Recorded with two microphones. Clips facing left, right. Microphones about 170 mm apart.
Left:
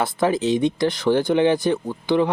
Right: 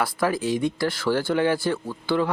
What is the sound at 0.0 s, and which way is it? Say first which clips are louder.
Speech: left 4 dB; 20° left (ahead or behind).